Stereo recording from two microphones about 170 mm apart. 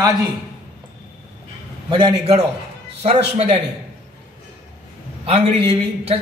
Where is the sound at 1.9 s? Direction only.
35° right (ahead or behind).